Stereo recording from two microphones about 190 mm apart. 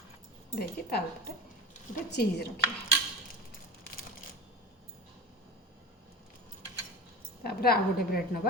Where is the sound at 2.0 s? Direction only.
60° left (ahead or behind).